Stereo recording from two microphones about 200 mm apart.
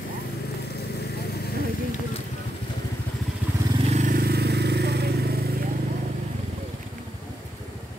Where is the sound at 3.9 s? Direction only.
45° right (ahead or behind).